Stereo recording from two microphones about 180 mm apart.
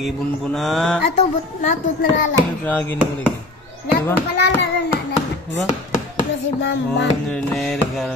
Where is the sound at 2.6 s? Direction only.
10° left (ahead or behind).